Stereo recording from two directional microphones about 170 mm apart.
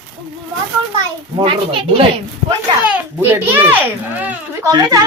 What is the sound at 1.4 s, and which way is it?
Speech, 30° right (ahead or behind).